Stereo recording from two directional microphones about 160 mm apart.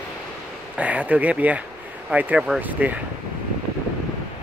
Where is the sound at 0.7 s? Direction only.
10° right (ahead or behind).